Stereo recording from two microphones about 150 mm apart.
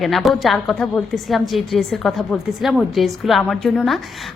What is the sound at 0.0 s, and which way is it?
A woman's voice, centre (ahead or behind).